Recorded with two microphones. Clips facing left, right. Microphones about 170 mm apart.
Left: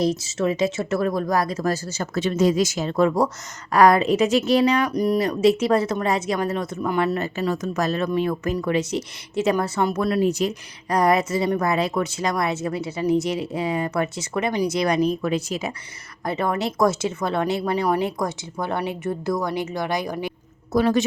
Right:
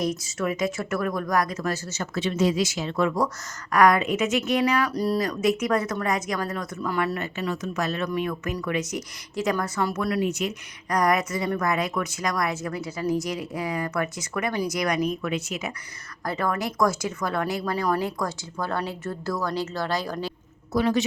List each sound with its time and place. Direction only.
0.0 s speech: 30° left (ahead or behind)
4.9 s speech: 20° left (ahead or behind)
5.3 s speech: 30° left (ahead or behind)
16.2 s speech: 20° left (ahead or behind)
20.7 s a man's voice: 45° left (ahead or behind)